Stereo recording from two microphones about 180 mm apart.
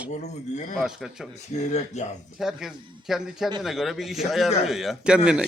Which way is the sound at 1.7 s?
40° left (ahead or behind).